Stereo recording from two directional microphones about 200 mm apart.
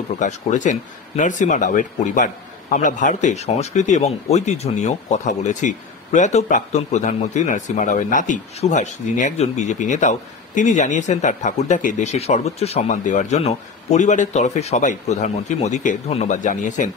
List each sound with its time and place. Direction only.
0.2 s speech: 35° left (ahead or behind)